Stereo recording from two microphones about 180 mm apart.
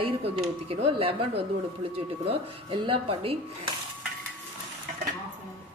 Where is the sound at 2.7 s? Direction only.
30° right (ahead or behind).